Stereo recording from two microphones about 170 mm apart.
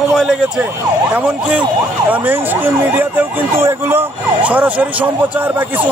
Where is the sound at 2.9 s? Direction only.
10° right (ahead or behind).